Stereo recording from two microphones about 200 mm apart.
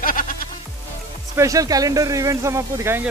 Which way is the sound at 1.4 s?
15° right (ahead or behind).